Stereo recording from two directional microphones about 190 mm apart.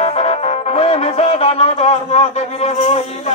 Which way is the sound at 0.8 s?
30° left (ahead or behind).